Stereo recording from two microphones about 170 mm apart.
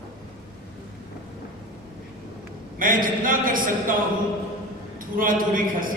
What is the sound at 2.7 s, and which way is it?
A man's voice, 55° right (ahead or behind).